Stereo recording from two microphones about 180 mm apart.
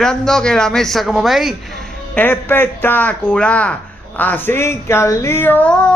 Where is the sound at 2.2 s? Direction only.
10° left (ahead or behind).